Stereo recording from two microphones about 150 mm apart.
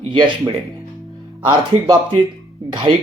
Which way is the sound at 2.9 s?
35° right (ahead or behind).